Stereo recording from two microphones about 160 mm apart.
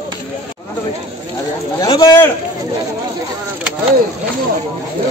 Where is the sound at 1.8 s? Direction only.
25° left (ahead or behind).